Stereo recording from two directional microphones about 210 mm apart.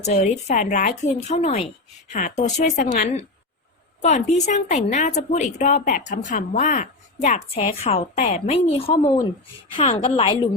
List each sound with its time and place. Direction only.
0.0 s a woman's voice: 35° left (ahead or behind)